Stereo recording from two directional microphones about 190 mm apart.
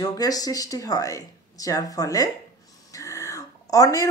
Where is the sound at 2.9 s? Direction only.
15° left (ahead or behind).